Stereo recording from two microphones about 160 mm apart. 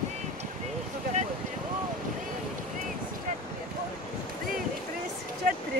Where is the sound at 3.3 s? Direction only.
50° right (ahead or behind).